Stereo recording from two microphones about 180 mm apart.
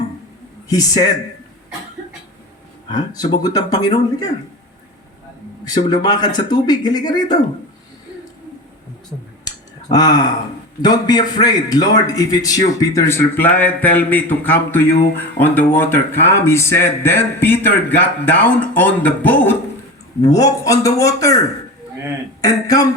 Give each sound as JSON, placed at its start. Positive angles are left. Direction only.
{"t": 0.7, "sound": "speech", "side_deg": 20}
{"t": 2.9, "sound": "speech", "side_deg": 20}
{"t": 5.6, "sound": "speech", "side_deg": 25}
{"t": 9.9, "sound": "speech", "side_deg": 20}
{"t": 20.2, "sound": "speech", "side_deg": 20}
{"t": 22.4, "sound": "speech", "side_deg": 20}